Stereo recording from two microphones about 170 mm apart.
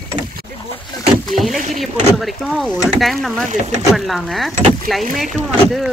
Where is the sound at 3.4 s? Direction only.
45° right (ahead or behind).